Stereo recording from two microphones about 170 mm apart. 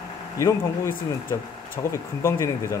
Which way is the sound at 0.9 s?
55° left (ahead or behind).